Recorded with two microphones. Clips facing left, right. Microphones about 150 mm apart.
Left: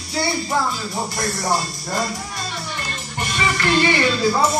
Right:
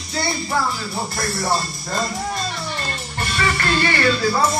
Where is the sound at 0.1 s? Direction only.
15° left (ahead or behind).